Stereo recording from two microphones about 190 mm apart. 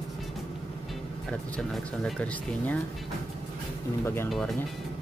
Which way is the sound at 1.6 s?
5° left (ahead or behind).